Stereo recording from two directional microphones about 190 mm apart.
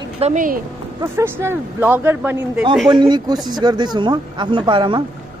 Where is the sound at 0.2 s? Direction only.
45° right (ahead or behind).